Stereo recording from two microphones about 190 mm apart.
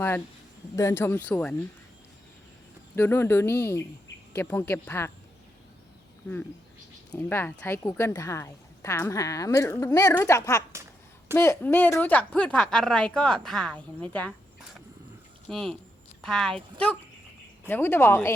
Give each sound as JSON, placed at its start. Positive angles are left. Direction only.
{"t": 0.8, "sound": "a woman's voice", "side_deg": 15}
{"t": 2.9, "sound": "a woman's voice", "side_deg": 10}
{"t": 7.1, "sound": "a woman's voice", "side_deg": 10}
{"t": 15.4, "sound": "a woman's voice", "side_deg": 5}